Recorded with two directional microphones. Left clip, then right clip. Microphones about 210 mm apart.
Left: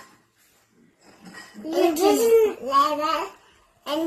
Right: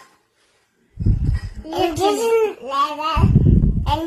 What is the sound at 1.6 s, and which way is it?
A child's voice, 15° right (ahead or behind).